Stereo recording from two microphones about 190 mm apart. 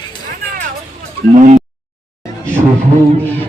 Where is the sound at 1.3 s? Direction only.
40° right (ahead or behind).